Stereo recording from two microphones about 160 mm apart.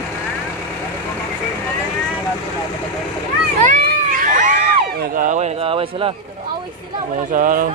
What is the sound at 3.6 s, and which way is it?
Cat, 55° right (ahead or behind).